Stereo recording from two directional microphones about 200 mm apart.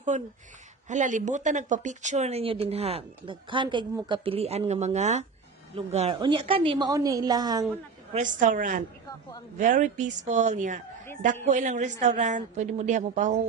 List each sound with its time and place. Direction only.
0.1 s speech: 35° right (ahead or behind); by 7.6 s 20° right (ahead or behind)
8.1 s speech: 40° right (ahead or behind)